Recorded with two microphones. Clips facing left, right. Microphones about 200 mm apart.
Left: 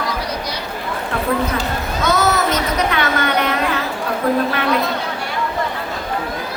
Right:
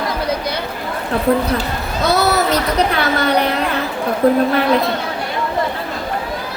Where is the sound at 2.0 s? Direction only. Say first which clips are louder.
Right 2 dB; 35° right (ahead or behind).